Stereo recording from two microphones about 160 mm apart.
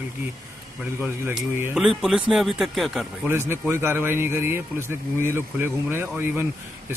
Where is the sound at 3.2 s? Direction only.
15° right (ahead or behind).